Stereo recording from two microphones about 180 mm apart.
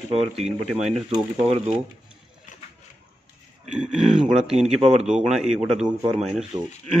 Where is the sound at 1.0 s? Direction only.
35° right (ahead or behind).